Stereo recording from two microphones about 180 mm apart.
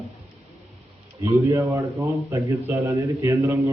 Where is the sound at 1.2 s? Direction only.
15° right (ahead or behind).